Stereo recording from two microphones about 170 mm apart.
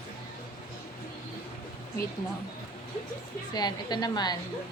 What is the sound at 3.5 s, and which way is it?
Speech, 25° left (ahead or behind).